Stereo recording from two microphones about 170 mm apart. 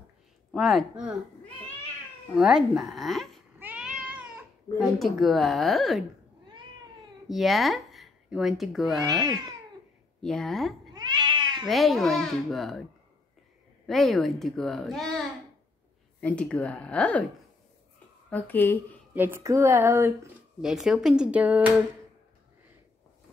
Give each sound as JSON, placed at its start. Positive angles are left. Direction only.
{"t": 0.5, "sound": "a woman's voice", "side_deg": 0}
{"t": 2.3, "sound": "a woman's voice", "side_deg": -5}
{"t": 3.5, "sound": "cat", "side_deg": -10}
{"t": 4.7, "sound": "a woman's voice", "side_deg": 0}
{"t": 7.2, "sound": "speech", "side_deg": 0}
{"t": 9.0, "sound": "speech", "side_deg": -20}
{"t": 10.2, "sound": "a woman's voice", "side_deg": 5}
{"t": 11.0, "sound": "cat", "side_deg": -25}
{"t": 11.6, "sound": "a woman's voice", "side_deg": 0}
{"t": 13.8, "sound": "a woman's voice", "side_deg": 0}
{"t": 18.3, "sound": "speech", "side_deg": 10}
{"t": 19.1, "sound": "a woman's voice", "side_deg": -15}